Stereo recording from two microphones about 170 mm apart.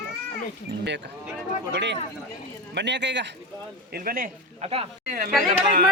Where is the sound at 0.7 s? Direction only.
90° right.